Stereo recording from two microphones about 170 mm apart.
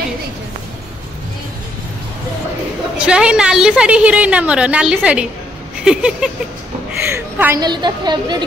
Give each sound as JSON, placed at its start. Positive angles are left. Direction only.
{"t": 3.0, "sound": "a woman's voice", "side_deg": -5}
{"t": 7.6, "sound": "speech", "side_deg": -25}